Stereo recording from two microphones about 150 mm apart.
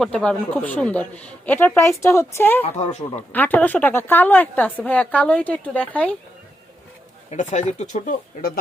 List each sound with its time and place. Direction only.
0.0 s a woman's voice: 5° left (ahead or behind)
2.6 s speech: 50° left (ahead or behind)
3.3 s a woman's voice: 10° left (ahead or behind)
7.3 s speech: 50° left (ahead or behind)